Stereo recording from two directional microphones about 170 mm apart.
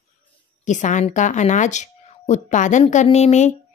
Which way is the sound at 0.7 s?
45° left (ahead or behind).